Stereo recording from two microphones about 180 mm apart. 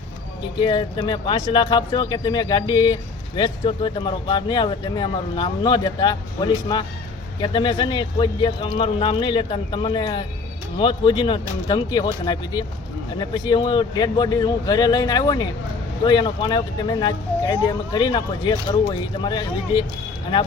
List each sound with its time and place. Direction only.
0.6 s speech: 25° left (ahead or behind)